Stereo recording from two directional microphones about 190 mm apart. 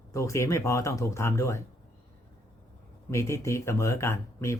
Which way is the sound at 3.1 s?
15° left (ahead or behind).